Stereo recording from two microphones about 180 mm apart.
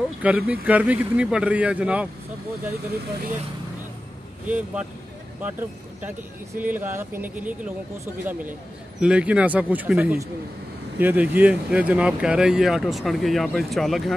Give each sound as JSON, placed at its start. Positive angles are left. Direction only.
{"t": 0.2, "sound": "a man's voice", "side_deg": -10}
{"t": 4.5, "sound": "a man's voice", "side_deg": -10}